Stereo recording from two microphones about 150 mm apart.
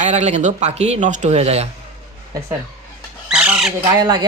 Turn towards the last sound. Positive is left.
turn(degrees=-30)  # may be behind; listen again after turning